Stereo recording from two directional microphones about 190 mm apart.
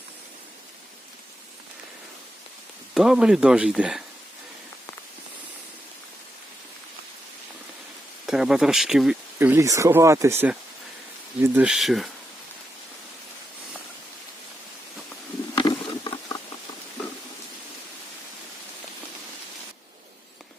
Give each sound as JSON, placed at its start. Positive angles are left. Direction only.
{"t": 2.9, "sound": "speech", "side_deg": -5}
{"t": 8.3, "sound": "speech", "side_deg": 0}
{"t": 15.5, "sound": "patter", "side_deg": 25}